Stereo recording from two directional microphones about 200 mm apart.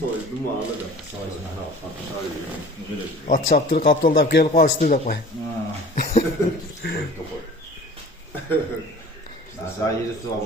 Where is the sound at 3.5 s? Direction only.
50° left (ahead or behind).